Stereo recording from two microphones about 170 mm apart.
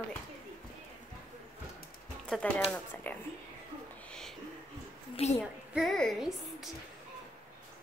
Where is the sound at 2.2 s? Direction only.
5° left (ahead or behind).